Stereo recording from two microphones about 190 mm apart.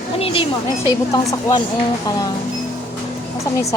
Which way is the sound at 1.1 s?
15° left (ahead or behind).